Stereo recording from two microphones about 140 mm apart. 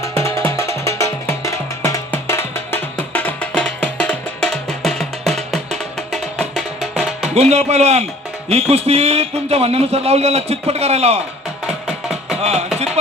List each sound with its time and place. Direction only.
0.2 s music: 20° left (ahead or behind); by 5.5 s centre (ahead or behind)
6.9 s music: centre (ahead or behind)
7.3 s speech: 50° right (ahead or behind)
11.6 s music: 5° right (ahead or behind)
12.4 s music: 50° right (ahead or behind)